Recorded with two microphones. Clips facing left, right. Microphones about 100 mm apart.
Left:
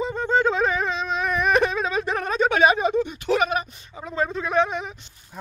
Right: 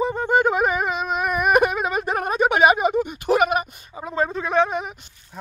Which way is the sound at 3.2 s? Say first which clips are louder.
Right 6 dB; 45° right (ahead or behind).